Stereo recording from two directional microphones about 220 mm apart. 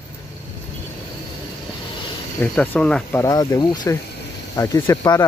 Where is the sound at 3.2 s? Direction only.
15° left (ahead or behind).